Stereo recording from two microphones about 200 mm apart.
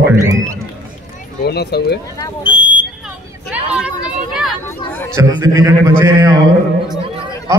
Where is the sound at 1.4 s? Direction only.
55° left (ahead or behind).